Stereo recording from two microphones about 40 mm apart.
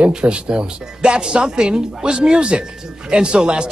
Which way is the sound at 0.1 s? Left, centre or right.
Right.